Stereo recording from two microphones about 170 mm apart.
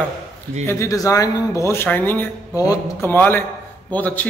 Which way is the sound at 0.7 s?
20° left (ahead or behind).